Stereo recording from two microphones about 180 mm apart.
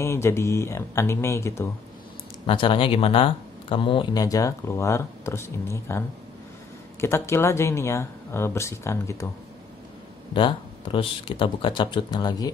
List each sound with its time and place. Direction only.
0.0 s speech: 15° left (ahead or behind)
2.4 s speech: 30° left (ahead or behind)
10.3 s speech: 30° left (ahead or behind)